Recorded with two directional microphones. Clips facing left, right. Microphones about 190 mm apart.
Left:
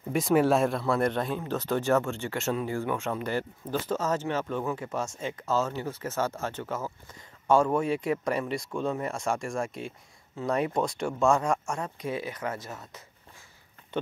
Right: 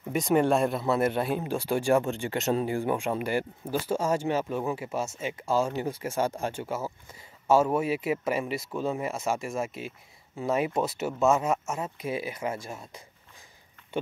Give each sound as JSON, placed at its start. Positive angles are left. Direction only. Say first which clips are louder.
{"t": 0.1, "sound": "speech", "louder": "even", "side_deg": 0}